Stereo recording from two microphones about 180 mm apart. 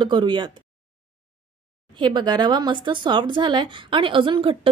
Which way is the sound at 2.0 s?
25° right (ahead or behind).